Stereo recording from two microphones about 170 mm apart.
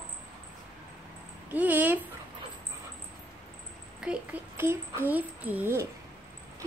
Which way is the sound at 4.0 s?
5° right (ahead or behind).